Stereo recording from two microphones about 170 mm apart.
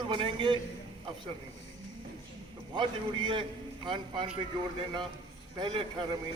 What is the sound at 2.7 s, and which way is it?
Speech, 30° right (ahead or behind).